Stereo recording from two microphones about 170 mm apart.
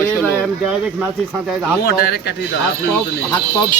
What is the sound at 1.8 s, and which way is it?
Speech, 65° left (ahead or behind).